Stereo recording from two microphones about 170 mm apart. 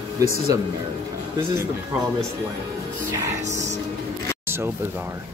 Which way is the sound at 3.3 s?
20° right (ahead or behind).